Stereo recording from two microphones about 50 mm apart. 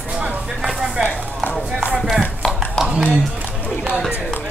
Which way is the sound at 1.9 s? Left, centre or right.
Centre.